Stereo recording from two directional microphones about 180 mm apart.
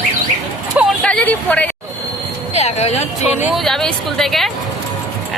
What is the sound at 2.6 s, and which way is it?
Speech, 35° left (ahead or behind).